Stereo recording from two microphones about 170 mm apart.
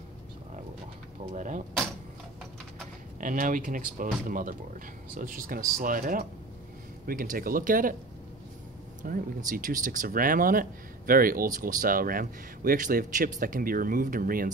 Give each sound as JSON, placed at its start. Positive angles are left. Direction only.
{"t": 1.3, "sound": "speech", "side_deg": -50}
{"t": 3.2, "sound": "speech", "side_deg": -50}
{"t": 9.0, "sound": "speech", "side_deg": -55}